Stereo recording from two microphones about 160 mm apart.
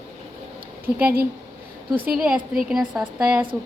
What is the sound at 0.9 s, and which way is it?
A woman's voice, 10° right (ahead or behind).